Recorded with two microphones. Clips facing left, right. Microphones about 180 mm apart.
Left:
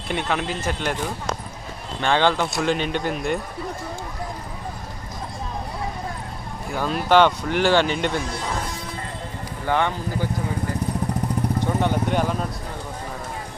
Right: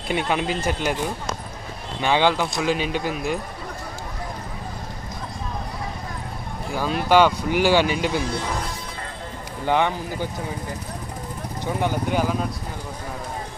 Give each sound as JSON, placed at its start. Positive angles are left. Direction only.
{"t": 0.1, "sound": "speech", "side_deg": -10}
{"t": 2.0, "sound": "speech", "side_deg": -10}
{"t": 6.7, "sound": "speech", "side_deg": -5}
{"t": 9.6, "sound": "speech", "side_deg": -15}
{"t": 11.8, "sound": "speech", "side_deg": -5}